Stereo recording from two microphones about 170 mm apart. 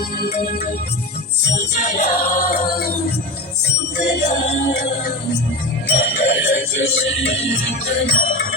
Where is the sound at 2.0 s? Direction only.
65° left (ahead or behind).